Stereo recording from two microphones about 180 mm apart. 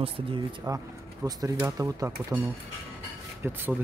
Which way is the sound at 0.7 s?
20° right (ahead or behind).